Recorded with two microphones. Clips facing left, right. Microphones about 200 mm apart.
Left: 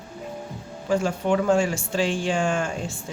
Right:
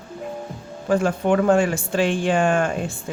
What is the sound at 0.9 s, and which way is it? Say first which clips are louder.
Speech: right 3 dB; 55° right (ahead or behind).